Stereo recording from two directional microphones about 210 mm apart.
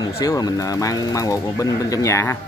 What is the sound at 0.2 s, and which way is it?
Speech, 20° left (ahead or behind).